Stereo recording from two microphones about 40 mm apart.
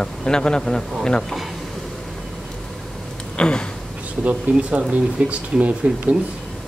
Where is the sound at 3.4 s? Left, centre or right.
Left.